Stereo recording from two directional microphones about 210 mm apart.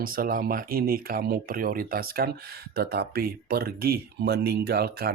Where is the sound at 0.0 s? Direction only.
45° right (ahead or behind).